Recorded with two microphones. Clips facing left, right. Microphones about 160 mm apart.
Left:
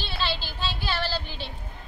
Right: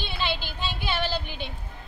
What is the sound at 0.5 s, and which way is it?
Speech, 20° right (ahead or behind).